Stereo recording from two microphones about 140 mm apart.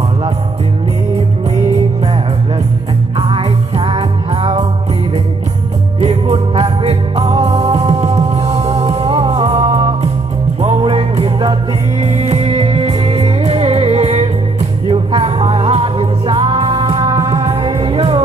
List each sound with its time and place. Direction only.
3.2 s music: 45° right (ahead or behind)
5.9 s music: 50° right (ahead or behind)
12.0 s music: 50° right (ahead or behind); by 17.1 s 35° right (ahead or behind)
17.1 s music: 25° right (ahead or behind)
17.8 s music: 40° right (ahead or behind)